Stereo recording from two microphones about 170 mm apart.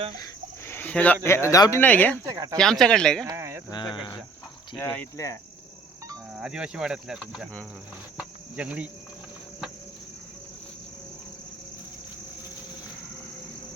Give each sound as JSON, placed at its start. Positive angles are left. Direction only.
{"t": 0.2, "sound": "speech", "side_deg": 15}
{"t": 2.2, "sound": "speech", "side_deg": -20}
{"t": 2.6, "sound": "speech", "side_deg": 5}
{"t": 3.2, "sound": "speech", "side_deg": -15}
{"t": 3.7, "sound": "speech", "side_deg": 30}
{"t": 4.8, "sound": "speech", "side_deg": 15}
{"t": 6.3, "sound": "speech", "side_deg": -5}
{"t": 8.2, "sound": "cricket", "side_deg": -5}